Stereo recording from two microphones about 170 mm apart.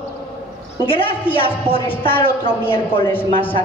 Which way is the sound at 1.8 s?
10° left (ahead or behind).